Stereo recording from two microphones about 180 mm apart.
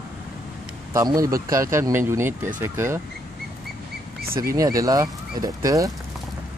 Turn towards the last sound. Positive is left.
turn(degrees=-20)  # may be behind; listen again after turning